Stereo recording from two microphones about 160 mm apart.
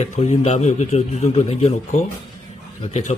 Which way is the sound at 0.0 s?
45° left (ahead or behind).